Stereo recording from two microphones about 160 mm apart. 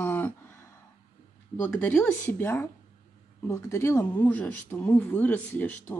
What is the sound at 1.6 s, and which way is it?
Speech, 15° left (ahead or behind).